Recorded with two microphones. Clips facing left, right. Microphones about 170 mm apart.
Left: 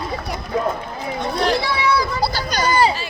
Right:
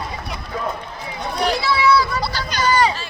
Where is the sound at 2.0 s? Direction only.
40° left (ahead or behind).